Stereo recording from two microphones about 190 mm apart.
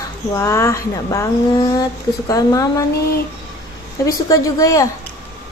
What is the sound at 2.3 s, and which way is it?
Speech, 20° left (ahead or behind).